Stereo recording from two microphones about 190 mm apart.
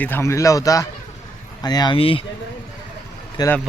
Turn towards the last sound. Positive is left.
turn(degrees=20)  # may be behind; listen again after turning